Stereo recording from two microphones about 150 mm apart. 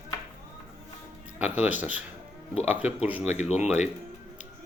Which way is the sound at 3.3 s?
50° left (ahead or behind).